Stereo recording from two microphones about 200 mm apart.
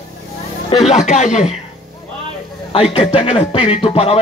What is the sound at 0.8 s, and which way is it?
Speech, 35° left (ahead or behind).